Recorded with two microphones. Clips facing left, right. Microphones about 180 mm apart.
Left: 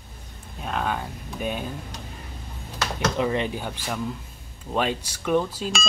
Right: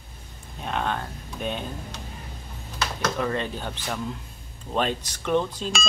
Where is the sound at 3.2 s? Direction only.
15° left (ahead or behind).